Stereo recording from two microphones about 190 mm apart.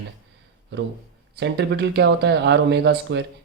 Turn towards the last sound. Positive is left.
turn(degrees=-65)  # may be behind; listen again after turning